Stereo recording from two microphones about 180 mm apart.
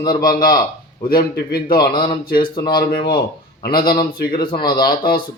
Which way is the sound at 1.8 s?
25° left (ahead or behind).